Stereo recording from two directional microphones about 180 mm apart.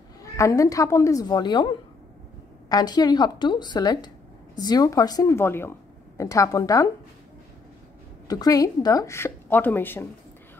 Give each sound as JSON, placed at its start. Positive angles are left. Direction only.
{"t": 0.2, "sound": "speech", "side_deg": 20}
{"t": 8.3, "sound": "speech", "side_deg": 20}